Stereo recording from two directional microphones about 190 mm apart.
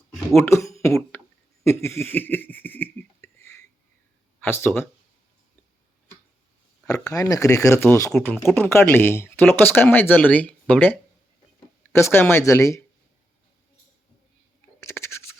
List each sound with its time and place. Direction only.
0.3 s speech: 15° left (ahead or behind)
1.1 s a sound: 10° left (ahead or behind)
4.4 s speech: 10° left (ahead or behind)
6.8 s speech: 15° left (ahead or behind)
11.9 s speech: 15° left (ahead or behind)
14.8 s a sound: 15° left (ahead or behind)